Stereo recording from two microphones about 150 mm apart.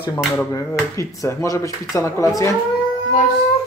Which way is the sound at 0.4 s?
20° left (ahead or behind).